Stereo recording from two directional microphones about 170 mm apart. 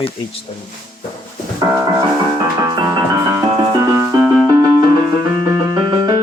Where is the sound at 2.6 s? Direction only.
20° right (ahead or behind).